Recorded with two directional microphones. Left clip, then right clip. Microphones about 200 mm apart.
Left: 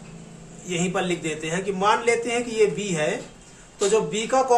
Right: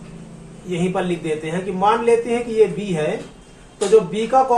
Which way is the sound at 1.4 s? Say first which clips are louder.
Right 4 dB; 30° left (ahead or behind).